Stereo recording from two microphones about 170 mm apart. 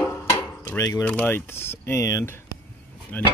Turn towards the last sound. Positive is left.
turn(degrees=10)  # may be behind; listen again after turning